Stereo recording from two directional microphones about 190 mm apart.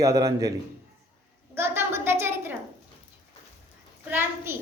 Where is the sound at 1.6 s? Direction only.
10° right (ahead or behind).